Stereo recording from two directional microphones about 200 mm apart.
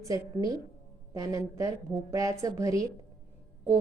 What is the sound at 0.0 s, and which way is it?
A woman's voice, 15° right (ahead or behind).